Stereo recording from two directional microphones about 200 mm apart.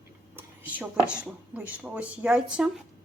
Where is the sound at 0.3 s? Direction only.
10° right (ahead or behind).